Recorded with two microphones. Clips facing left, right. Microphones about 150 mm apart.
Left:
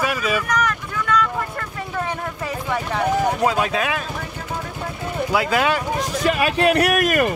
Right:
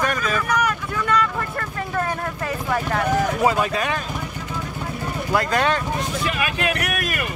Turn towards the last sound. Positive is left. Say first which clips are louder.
# left 7 dB
turn(degrees=35)  # may be behind; listen again after turning